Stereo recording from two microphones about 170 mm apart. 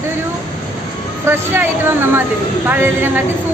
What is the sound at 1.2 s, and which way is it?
Speech, 15° right (ahead or behind).